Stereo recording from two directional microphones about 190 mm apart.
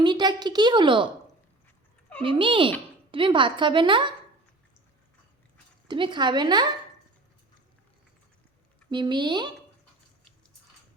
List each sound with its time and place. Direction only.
0.0 s a woman's voice: 25° right (ahead or behind)
2.2 s a woman's voice: 25° right (ahead or behind)
5.9 s a woman's voice: 25° right (ahead or behind)
8.9 s a woman's voice: 25° right (ahead or behind)